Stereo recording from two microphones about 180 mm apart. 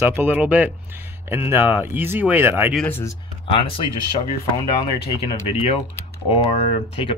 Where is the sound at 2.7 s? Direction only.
10° left (ahead or behind).